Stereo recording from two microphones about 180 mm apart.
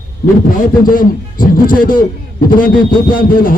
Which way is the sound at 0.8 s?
50° left (ahead or behind).